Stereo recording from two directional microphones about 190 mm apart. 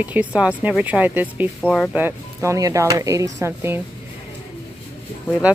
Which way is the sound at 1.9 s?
15° right (ahead or behind).